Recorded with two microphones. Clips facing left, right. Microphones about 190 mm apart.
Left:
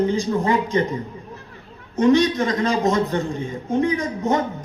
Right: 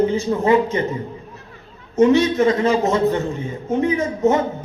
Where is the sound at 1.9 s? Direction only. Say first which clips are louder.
Right 2 dB; 25° right (ahead or behind).